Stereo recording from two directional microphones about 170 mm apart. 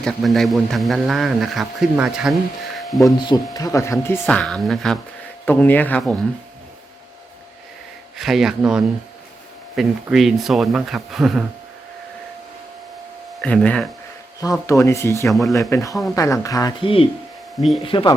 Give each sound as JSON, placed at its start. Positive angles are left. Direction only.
{"t": 0.0, "sound": "a man's voice", "side_deg": 0}
{"t": 2.7, "sound": "a sound", "side_deg": 0}
{"t": 3.0, "sound": "speech", "side_deg": 25}
{"t": 8.2, "sound": "a man's voice", "side_deg": 0}
{"t": 13.4, "sound": "a man's voice", "side_deg": 5}
{"t": 14.7, "sound": "speech", "side_deg": 20}
{"t": 15.3, "sound": "a man's voice", "side_deg": 0}
{"t": 15.7, "sound": "speech", "side_deg": 20}
{"t": 16.8, "sound": "speech", "side_deg": 35}